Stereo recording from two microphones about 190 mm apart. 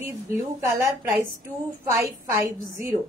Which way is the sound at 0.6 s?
15° right (ahead or behind).